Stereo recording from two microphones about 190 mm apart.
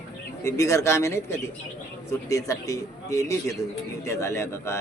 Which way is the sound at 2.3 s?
15° left (ahead or behind).